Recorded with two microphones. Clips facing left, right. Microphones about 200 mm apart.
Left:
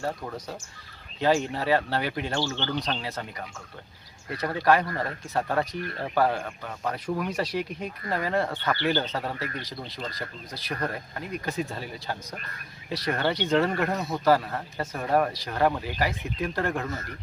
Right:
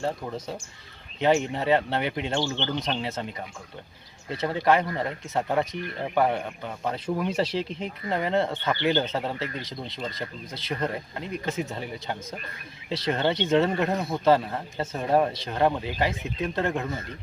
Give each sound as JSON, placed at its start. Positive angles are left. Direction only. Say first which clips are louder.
{"t": 0.3, "sound": "speech", "louder": "right 3 dB", "side_deg": -25}